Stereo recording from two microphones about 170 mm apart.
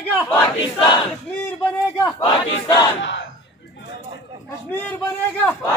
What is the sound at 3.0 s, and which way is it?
Speech, 90° left.